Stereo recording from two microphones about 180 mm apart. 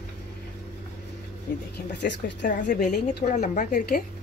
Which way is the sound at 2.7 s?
45° left (ahead or behind).